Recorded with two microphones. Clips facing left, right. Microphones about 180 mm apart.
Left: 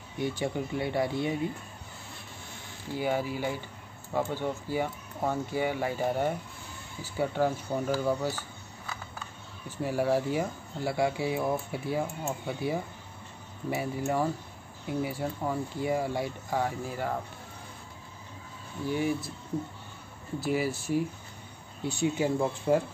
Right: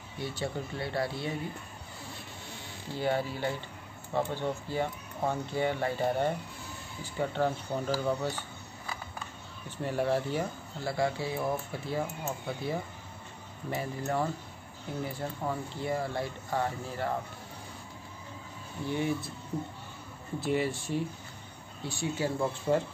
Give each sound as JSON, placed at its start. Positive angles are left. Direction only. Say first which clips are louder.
{"t": 0.2, "sound": "speech", "louder": "left 4 dB", "side_deg": 15}
{"t": 2.9, "sound": "speech", "louder": "left 1 dB", "side_deg": 10}
{"t": 9.8, "sound": "speech", "louder": "left 2 dB", "side_deg": 10}
{"t": 18.9, "sound": "speech", "louder": "left 2 dB", "side_deg": 10}
{"t": 20.4, "sound": "speech", "louder": "left 1 dB", "side_deg": 5}
{"t": 21.8, "sound": "speech", "louder": "left 4 dB", "side_deg": 20}